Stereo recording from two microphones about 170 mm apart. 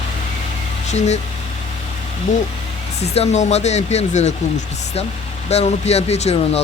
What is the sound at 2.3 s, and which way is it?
Speech, 45° left (ahead or behind).